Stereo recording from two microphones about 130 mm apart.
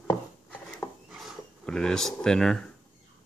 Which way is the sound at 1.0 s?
Centre (ahead or behind).